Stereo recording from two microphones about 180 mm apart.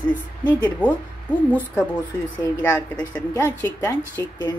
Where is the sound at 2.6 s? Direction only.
10° left (ahead or behind).